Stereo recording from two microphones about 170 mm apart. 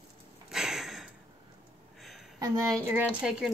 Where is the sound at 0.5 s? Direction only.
Centre (ahead or behind).